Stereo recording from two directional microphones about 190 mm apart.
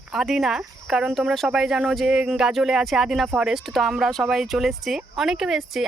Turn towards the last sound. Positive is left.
turn(degrees=0)  # may be behind; listen again after turning